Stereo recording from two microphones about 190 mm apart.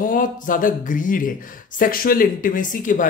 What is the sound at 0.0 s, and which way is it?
Speech, 45° left (ahead or behind).